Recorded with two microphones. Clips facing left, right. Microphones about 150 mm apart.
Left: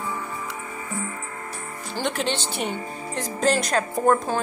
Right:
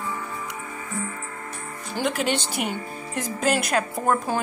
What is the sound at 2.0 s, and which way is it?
Speech, 5° right (ahead or behind).